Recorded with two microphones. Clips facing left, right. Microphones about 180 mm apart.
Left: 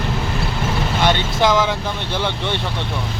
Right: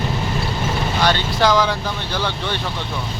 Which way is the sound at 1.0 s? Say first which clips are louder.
Left 1 dB; 20° left (ahead or behind).